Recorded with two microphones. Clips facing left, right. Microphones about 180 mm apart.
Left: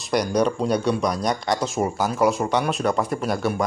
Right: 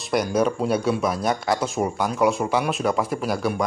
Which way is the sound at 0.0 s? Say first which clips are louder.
Even; centre (ahead or behind).